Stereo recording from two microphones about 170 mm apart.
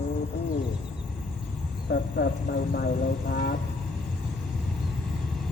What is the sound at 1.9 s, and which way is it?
Speech, 70° left (ahead or behind).